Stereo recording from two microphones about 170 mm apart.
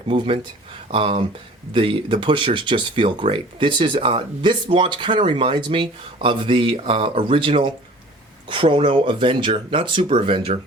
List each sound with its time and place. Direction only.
0.1 s speech: 30° right (ahead or behind)